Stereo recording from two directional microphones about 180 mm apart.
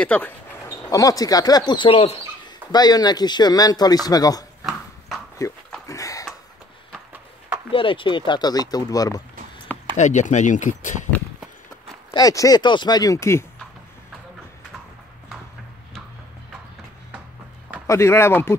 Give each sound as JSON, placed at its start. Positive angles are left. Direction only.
{"t": 0.0, "sound": "speech", "side_deg": 10}
{"t": 0.8, "sound": "speech", "side_deg": 20}
{"t": 5.9, "sound": "a sound", "side_deg": 20}
{"t": 7.1, "sound": "horse", "side_deg": -10}
{"t": 7.7, "sound": "speech", "side_deg": 30}
{"t": 9.9, "sound": "speech", "side_deg": 40}
{"t": 12.1, "sound": "speech", "side_deg": 20}
{"t": 17.8, "sound": "speech", "side_deg": 15}